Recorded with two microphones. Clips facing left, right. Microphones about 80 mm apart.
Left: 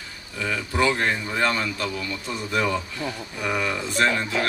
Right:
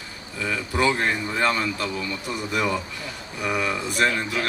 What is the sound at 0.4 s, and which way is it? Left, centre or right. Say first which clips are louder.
A man's voice: even; centre.